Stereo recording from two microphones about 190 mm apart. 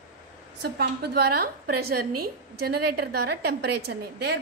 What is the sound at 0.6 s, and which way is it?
A woman's voice, 60° right (ahead or behind).